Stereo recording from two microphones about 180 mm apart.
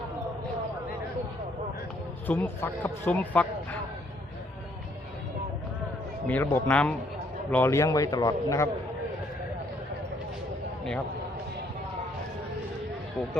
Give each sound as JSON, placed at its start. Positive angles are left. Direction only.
{"t": 2.2, "sound": "speech", "side_deg": 10}
{"t": 6.2, "sound": "speech", "side_deg": 10}